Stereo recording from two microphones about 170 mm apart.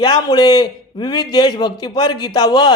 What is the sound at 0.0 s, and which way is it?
A man's voice, 25° left (ahead or behind).